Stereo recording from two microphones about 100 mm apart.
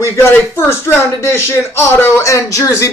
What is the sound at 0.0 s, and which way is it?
Speech, 25° left (ahead or behind).